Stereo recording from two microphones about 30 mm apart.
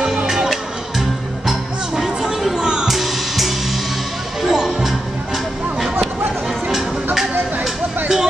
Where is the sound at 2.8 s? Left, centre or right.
Centre.